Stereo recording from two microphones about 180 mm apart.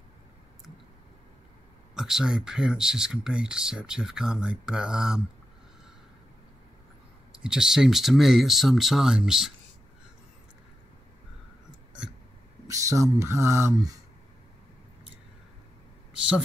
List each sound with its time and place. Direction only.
2.0 s speech: 5° right (ahead or behind)
7.3 s speech: 5° right (ahead or behind)
12.6 s speech: 20° right (ahead or behind)